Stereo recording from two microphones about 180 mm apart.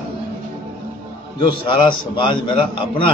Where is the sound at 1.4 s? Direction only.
25° left (ahead or behind).